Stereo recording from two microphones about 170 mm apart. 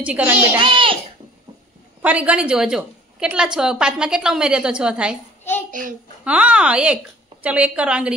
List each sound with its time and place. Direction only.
0.0 s a woman's voice: 10° right (ahead or behind)
0.6 s a child's voice: 30° right (ahead or behind)
2.0 s a woman's voice: 10° right (ahead or behind)
5.7 s a child's voice: 50° right (ahead or behind)
6.2 s a woman's voice: 5° right (ahead or behind)